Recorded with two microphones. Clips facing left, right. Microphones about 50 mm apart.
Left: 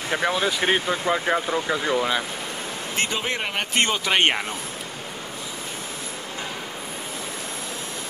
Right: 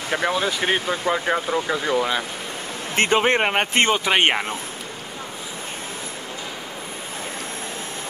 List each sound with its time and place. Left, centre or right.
0.1 s speech: centre
3.0 s speech: right
3.9 s speech: centre